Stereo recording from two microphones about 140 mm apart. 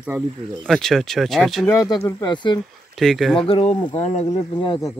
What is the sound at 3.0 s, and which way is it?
Speech, centre (ahead or behind).